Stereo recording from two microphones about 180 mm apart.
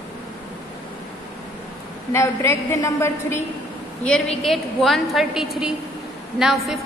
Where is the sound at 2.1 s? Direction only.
15° left (ahead or behind).